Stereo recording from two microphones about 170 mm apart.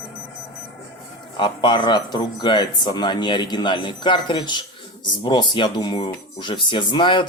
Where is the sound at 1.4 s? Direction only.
30° left (ahead or behind).